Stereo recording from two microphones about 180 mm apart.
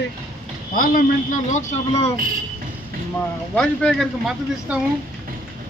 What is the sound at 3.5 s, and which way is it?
Speech, 5° left (ahead or behind).